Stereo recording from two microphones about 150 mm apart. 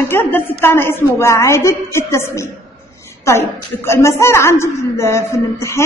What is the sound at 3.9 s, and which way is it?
A woman's voice, 20° left (ahead or behind).